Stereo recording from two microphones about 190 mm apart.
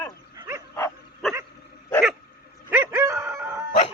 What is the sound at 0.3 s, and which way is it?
Wild animals, 15° right (ahead or behind).